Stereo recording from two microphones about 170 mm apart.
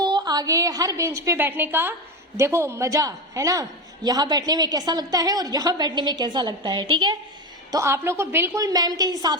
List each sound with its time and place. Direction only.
0.0 s a woman's voice: 25° right (ahead or behind)
7.7 s a woman's voice: 15° right (ahead or behind)